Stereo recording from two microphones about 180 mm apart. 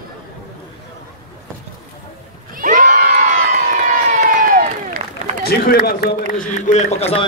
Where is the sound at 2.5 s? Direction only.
50° right (ahead or behind).